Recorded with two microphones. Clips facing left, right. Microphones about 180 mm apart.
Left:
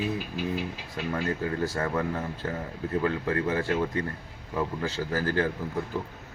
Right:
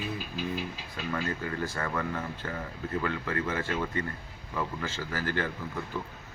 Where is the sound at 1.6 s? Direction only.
40° left (ahead or behind).